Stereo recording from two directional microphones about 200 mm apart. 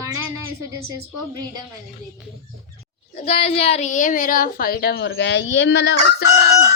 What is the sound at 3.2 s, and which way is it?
A woman's voice, 30° left (ahead or behind).